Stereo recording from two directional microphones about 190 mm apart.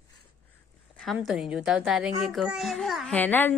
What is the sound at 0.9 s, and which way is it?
A child's voice, centre (ahead or behind).